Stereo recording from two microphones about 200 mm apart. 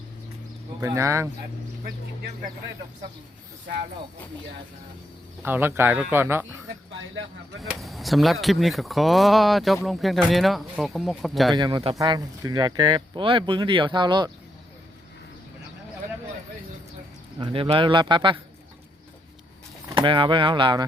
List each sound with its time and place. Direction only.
0.8 s speech: 15° right (ahead or behind)
5.4 s speech: 10° right (ahead or behind)
7.6 s speech: centre (ahead or behind)
11.5 s speech: 20° right (ahead or behind)
17.4 s speech: 25° right (ahead or behind)
19.9 s speech: 25° right (ahead or behind)